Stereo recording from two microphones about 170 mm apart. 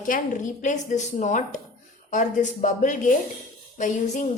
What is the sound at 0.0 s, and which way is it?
Speech, 50° left (ahead or behind).